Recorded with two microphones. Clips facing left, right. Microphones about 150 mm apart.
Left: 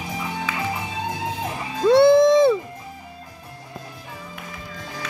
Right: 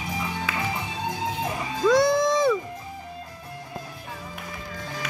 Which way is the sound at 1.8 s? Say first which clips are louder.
Left 7 dB; 25° left (ahead or behind).